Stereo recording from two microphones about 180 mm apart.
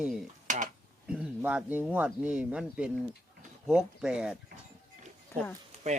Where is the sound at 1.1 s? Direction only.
5° right (ahead or behind).